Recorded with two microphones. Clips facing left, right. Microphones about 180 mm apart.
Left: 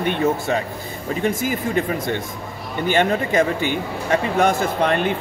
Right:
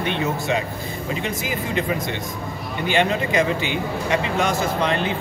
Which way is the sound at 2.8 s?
50° left (ahead or behind).